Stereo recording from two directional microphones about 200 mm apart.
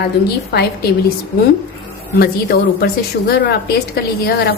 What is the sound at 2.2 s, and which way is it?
A woman's voice, 50° left (ahead or behind).